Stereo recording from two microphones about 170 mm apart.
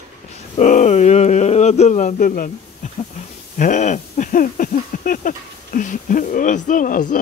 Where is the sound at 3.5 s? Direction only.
45° left (ahead or behind).